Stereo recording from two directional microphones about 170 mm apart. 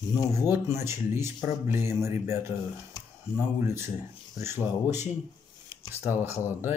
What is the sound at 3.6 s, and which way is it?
Speech, 15° right (ahead or behind).